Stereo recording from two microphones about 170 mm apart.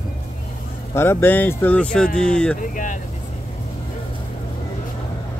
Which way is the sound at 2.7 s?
50° left (ahead or behind).